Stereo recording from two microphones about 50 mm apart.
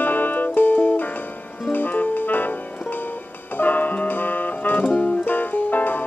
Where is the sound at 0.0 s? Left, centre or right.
Left.